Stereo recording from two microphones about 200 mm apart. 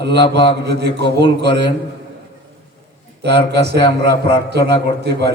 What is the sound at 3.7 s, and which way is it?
A man's voice, 25° left (ahead or behind).